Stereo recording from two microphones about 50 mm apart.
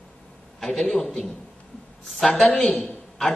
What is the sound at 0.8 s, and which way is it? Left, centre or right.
Speech, left.